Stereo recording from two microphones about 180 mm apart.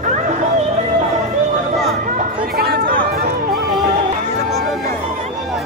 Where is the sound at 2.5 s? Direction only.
60° right (ahead or behind).